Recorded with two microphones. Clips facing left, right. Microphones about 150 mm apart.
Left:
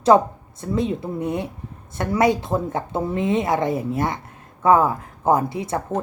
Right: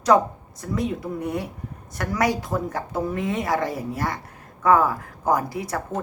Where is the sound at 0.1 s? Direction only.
30° left (ahead or behind).